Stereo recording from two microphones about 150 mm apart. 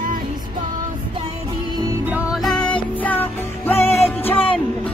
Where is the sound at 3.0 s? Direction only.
10° left (ahead or behind).